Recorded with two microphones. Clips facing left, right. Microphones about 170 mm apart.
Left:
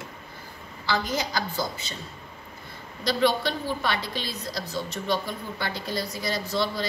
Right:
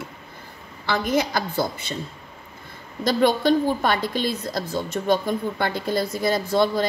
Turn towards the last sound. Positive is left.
turn(degrees=-50)  # may be behind; listen again after turning